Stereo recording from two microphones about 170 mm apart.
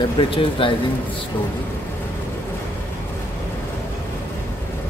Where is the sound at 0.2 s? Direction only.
30° left (ahead or behind).